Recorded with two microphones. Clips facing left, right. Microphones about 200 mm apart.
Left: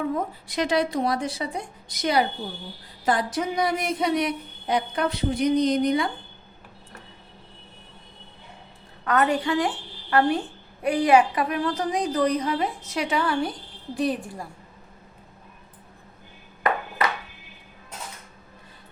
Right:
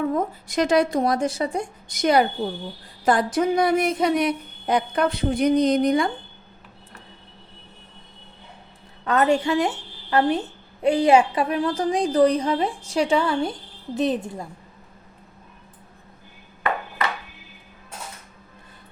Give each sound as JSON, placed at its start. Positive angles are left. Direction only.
{"t": 0.1, "sound": "speech", "side_deg": -45}
{"t": 9.0, "sound": "a woman's voice", "side_deg": -25}